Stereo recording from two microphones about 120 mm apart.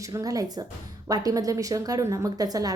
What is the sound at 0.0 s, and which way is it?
A woman's voice, 30° right (ahead or behind).